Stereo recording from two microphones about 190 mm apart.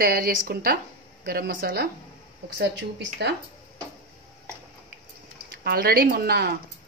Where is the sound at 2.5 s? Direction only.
65° right (ahead or behind).